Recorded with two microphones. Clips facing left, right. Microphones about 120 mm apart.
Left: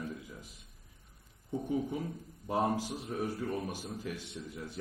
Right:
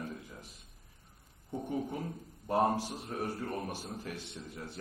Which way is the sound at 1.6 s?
45° right (ahead or behind).